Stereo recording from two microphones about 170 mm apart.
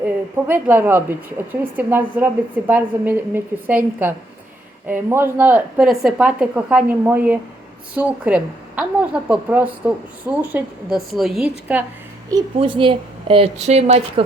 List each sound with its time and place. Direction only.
0.4 s a woman's voice: 10° right (ahead or behind)
12.5 s speech: 30° right (ahead or behind)